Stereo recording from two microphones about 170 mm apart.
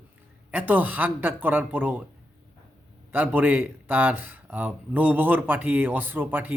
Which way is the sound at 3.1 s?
10° right (ahead or behind).